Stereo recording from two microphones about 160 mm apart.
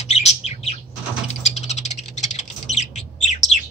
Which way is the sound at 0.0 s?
45° left (ahead or behind).